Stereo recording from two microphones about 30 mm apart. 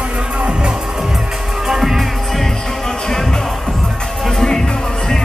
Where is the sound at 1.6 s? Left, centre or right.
Centre.